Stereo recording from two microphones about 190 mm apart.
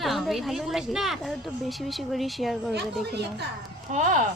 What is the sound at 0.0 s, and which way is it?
Speech, centre (ahead or behind).